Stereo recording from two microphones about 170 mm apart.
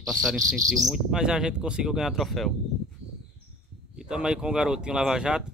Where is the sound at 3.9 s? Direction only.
5° right (ahead or behind).